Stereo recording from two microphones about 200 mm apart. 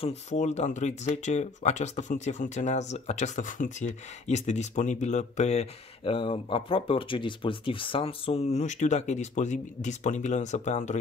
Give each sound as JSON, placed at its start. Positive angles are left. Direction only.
{"t": 0.0, "sound": "speech", "side_deg": 35}